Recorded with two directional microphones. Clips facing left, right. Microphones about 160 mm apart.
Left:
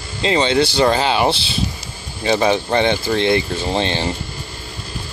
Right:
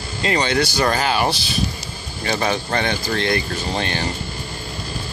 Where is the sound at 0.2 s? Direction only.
20° left (ahead or behind).